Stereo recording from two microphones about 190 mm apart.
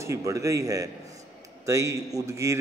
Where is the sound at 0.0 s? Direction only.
15° right (ahead or behind).